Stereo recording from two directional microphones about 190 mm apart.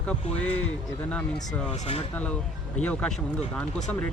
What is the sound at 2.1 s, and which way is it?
Speech, 5° left (ahead or behind).